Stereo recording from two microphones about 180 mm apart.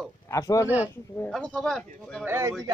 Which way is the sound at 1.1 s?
5° left (ahead or behind).